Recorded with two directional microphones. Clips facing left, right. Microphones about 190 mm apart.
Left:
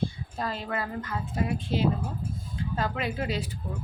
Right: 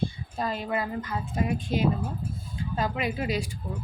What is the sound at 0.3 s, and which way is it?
A woman's voice, 15° right (ahead or behind).